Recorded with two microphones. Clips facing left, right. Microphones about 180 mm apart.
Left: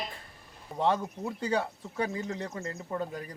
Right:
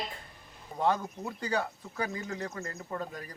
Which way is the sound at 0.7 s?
25° left (ahead or behind).